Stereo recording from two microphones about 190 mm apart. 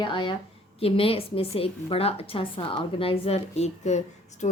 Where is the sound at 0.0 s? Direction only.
25° left (ahead or behind).